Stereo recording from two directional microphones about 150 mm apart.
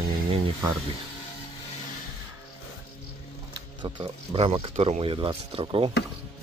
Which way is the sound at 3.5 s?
30° right (ahead or behind).